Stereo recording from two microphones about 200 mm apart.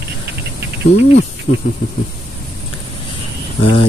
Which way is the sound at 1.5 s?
70° left (ahead or behind).